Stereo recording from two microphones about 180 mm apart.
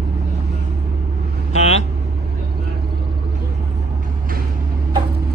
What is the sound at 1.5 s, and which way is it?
Vehicle, 35° left (ahead or behind).